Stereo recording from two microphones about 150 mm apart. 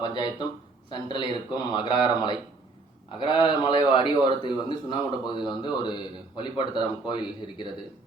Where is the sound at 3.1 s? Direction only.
30° left (ahead or behind).